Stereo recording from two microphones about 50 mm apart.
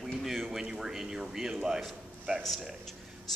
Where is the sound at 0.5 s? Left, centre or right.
Centre.